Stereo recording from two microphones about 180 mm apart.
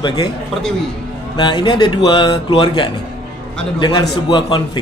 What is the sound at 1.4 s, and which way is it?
Speech, 25° left (ahead or behind).